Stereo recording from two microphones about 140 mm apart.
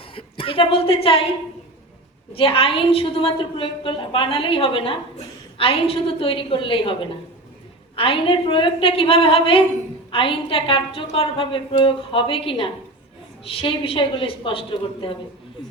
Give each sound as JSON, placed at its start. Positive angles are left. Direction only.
{"t": 0.1, "sound": "a woman's voice", "side_deg": 40}
{"t": 2.3, "sound": "a woman's voice", "side_deg": 40}